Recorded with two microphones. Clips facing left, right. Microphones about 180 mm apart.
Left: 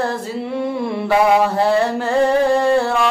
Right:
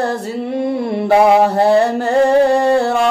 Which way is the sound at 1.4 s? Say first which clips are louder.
Right 4 dB; 40° right (ahead or behind).